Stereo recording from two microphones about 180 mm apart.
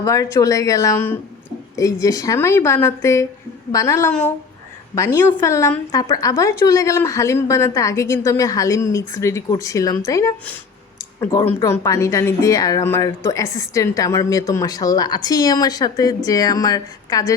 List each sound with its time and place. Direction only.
0.0 s a woman's voice: 20° left (ahead or behind)